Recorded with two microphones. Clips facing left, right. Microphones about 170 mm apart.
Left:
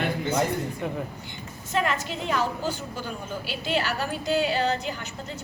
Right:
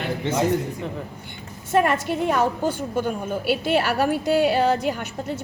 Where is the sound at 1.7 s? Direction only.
55° right (ahead or behind).